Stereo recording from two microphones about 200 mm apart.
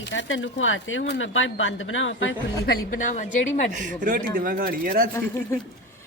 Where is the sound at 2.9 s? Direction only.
40° left (ahead or behind).